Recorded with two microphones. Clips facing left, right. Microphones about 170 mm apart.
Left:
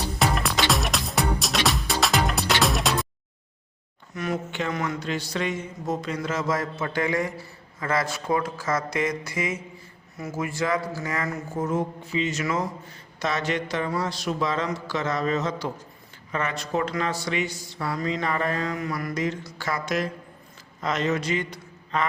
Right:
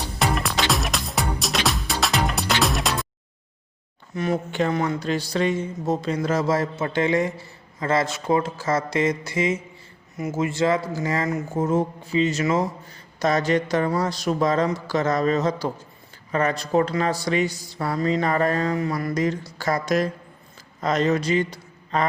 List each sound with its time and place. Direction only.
0.2 s music: centre (ahead or behind)
4.1 s a man's voice: 30° right (ahead or behind)